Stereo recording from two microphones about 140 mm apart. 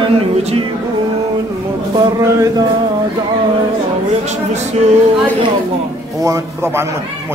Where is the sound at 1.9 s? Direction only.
30° right (ahead or behind).